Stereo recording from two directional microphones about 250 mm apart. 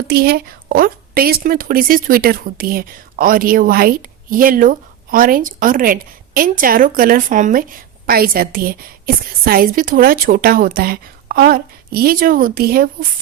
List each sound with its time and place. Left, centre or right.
0.1 s a woman's voice: right